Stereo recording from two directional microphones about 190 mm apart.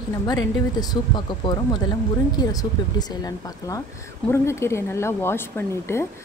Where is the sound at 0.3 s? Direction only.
20° left (ahead or behind).